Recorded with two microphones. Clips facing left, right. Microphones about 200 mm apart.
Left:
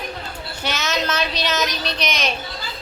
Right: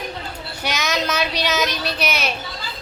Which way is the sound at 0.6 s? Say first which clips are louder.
Right 1 dB; 10° right (ahead or behind).